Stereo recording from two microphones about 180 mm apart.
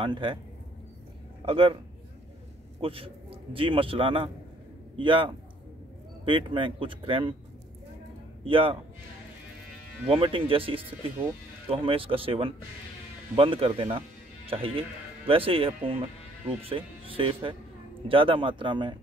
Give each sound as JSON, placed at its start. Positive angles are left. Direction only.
{"t": 0.0, "sound": "speech", "side_deg": -25}
{"t": 1.4, "sound": "a man's voice", "side_deg": -30}
{"t": 2.8, "sound": "a man's voice", "side_deg": -30}
{"t": 8.5, "sound": "speech", "side_deg": -30}
{"t": 10.0, "sound": "speech", "side_deg": -30}